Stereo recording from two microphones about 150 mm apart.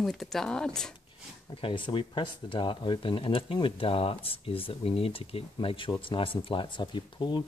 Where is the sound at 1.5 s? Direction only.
35° left (ahead or behind).